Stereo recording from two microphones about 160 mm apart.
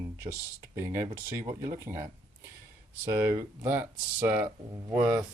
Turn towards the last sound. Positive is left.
turn(degrees=-20)  # may be behind; listen again after turning